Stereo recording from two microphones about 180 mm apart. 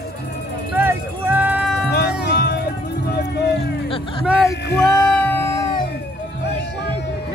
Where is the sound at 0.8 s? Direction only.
10° right (ahead or behind).